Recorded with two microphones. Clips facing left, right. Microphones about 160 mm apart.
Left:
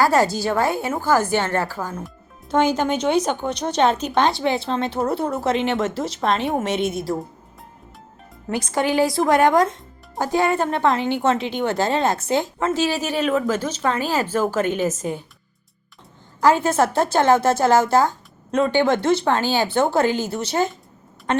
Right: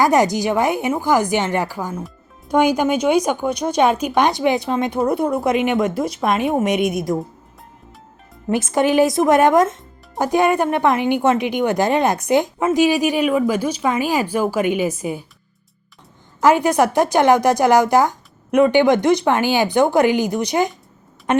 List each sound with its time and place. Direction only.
0.0 s a woman's voice: 20° right (ahead or behind)
8.4 s a woman's voice: 20° right (ahead or behind)
16.4 s a woman's voice: 15° right (ahead or behind)